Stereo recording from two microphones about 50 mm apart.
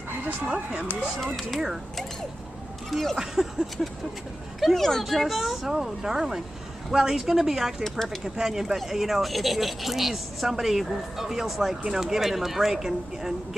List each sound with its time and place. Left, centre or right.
0.5 s speech: centre
1.2 s speech: centre
2.9 s speech: centre
3.2 s speech: centre
4.6 s speech: centre